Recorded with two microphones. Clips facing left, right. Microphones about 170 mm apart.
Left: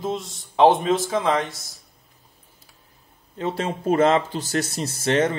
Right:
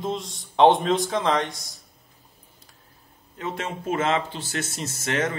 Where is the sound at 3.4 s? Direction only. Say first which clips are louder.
Left 5 dB; 35° left (ahead or behind).